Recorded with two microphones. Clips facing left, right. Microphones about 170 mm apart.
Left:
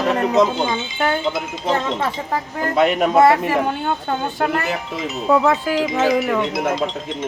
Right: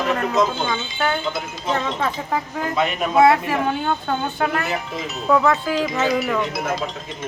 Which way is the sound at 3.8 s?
5° left (ahead or behind).